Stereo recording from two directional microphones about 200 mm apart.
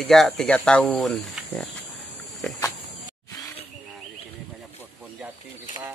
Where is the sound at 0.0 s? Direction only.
Centre (ahead or behind).